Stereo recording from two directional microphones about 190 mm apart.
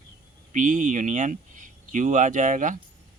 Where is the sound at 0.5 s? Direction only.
40° right (ahead or behind).